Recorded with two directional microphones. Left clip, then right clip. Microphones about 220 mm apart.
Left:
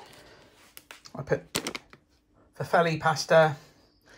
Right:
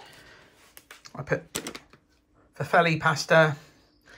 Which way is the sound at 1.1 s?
20° left (ahead or behind).